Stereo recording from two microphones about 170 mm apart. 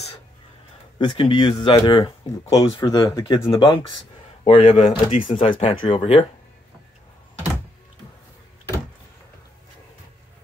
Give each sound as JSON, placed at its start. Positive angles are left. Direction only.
{"t": 0.9, "sound": "speech", "side_deg": 30}